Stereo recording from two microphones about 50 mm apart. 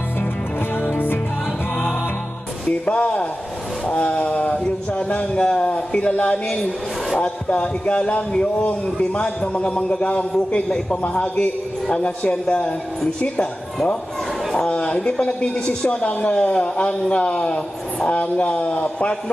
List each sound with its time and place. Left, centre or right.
0.9 s music: left
2.8 s a sound: left
7.2 s speech: left
14.5 s speech: centre